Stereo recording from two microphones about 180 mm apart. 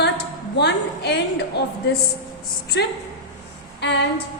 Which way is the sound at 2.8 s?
70° left (ahead or behind).